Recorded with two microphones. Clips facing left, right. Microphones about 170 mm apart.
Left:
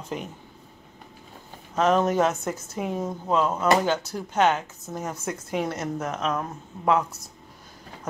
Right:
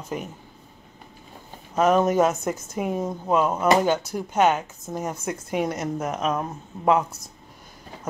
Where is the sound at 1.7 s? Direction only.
10° right (ahead or behind).